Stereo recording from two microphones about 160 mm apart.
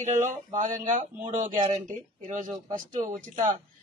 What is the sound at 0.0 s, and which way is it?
Speech, 50° right (ahead or behind).